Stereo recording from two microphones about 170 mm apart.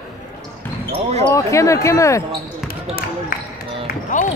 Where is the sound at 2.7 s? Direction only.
60° left (ahead or behind).